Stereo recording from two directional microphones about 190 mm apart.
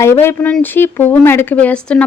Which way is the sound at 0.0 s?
15° left (ahead or behind).